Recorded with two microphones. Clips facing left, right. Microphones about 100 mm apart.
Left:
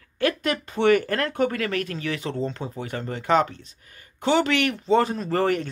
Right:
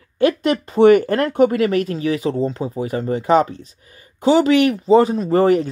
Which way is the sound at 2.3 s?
35° right (ahead or behind).